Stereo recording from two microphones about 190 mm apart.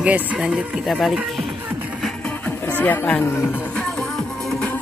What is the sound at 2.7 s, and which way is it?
Speech, 10° left (ahead or behind).